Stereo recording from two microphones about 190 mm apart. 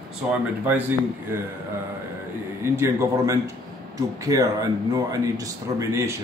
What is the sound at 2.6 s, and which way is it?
A man's voice, 15° right (ahead or behind).